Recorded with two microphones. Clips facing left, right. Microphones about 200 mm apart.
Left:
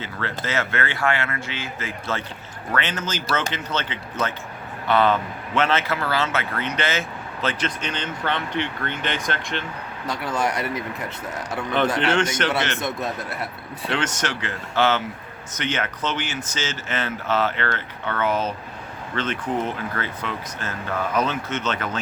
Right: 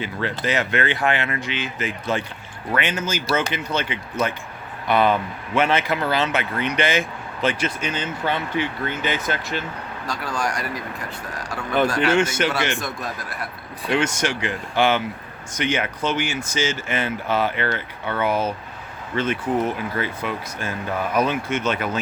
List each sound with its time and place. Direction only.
0.0 s speech: 15° right (ahead or behind)
10.1 s speech: 20° left (ahead or behind)
12.1 s speech: 10° right (ahead or behind)
12.8 s speech: 25° left (ahead or behind)
13.9 s speech: 10° right (ahead or behind)